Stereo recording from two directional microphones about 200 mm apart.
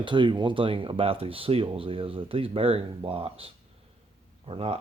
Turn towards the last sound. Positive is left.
turn(degrees=-30)  # may be behind; listen again after turning